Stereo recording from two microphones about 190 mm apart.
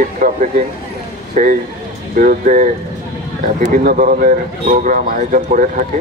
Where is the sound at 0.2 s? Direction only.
45° right (ahead or behind).